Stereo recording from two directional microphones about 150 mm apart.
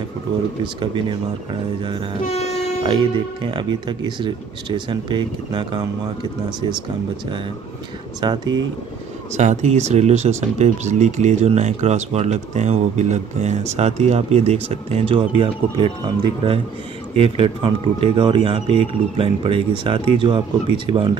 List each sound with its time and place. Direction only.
0.7 s speech: 35° right (ahead or behind)
2.2 s train: 45° left (ahead or behind)
2.8 s speech: 30° right (ahead or behind)
8.2 s speech: 30° right (ahead or behind)
9.3 s speech: 50° right (ahead or behind); by 21.2 s 30° right (ahead or behind)